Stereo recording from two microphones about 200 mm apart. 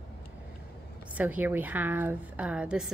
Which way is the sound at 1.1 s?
10° right (ahead or behind).